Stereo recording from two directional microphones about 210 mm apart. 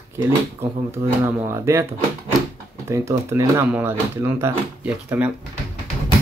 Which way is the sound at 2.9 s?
15° right (ahead or behind).